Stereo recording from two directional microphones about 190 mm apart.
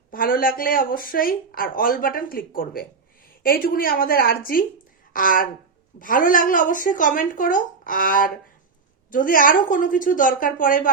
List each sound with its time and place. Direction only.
0.1 s speech: 50° left (ahead or behind)